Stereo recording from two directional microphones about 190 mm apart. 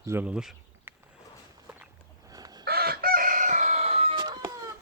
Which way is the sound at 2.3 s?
20° right (ahead or behind).